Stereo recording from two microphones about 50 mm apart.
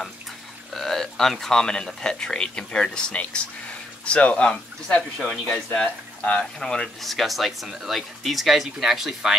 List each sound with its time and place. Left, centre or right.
0.7 s speech: centre
7.0 s speech: centre